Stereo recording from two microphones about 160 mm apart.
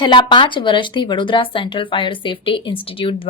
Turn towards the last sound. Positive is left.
turn(degrees=35)  # may be behind; listen again after turning